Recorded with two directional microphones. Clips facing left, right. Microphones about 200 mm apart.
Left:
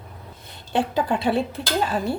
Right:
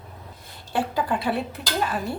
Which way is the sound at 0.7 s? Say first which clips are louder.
Left 3 dB; 25° left (ahead or behind).